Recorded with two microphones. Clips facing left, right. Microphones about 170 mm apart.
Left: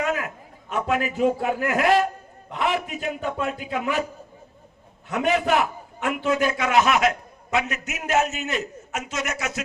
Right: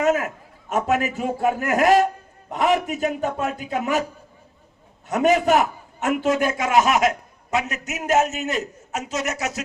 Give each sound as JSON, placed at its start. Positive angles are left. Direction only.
{"t": 0.0, "sound": "a sound", "side_deg": -45}
{"t": 0.7, "sound": "a man's voice", "side_deg": -45}
{"t": 5.0, "sound": "a man's voice", "side_deg": -40}